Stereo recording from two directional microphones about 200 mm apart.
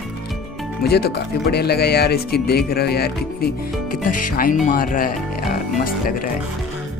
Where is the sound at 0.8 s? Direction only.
50° left (ahead or behind).